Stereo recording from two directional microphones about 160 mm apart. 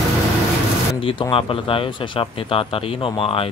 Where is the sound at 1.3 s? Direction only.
35° left (ahead or behind).